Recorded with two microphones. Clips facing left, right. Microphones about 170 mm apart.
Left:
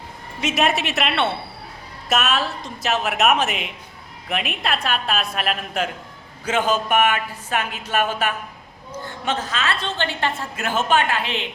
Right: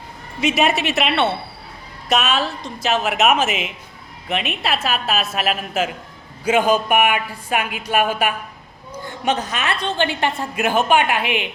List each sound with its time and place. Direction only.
0.4 s a woman's voice: centre (ahead or behind)